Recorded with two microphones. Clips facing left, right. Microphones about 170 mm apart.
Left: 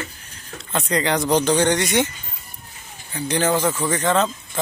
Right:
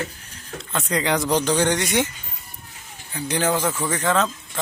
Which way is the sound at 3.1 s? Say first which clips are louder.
Left 2 dB; 10° right (ahead or behind).